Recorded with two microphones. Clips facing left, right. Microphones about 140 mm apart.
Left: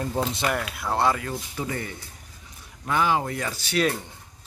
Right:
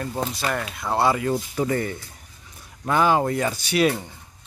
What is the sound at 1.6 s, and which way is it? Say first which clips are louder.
Speech: right 6 dB; 45° right (ahead or behind).